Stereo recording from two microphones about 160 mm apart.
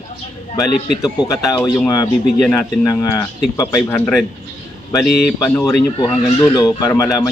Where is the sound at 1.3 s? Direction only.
20° left (ahead or behind).